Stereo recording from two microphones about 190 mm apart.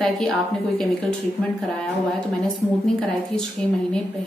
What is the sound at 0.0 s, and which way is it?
Speech, 5° left (ahead or behind).